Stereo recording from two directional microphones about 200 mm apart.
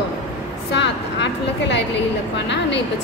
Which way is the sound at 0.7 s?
60° left (ahead or behind).